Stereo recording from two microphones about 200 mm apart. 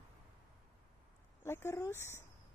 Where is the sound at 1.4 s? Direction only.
15° left (ahead or behind).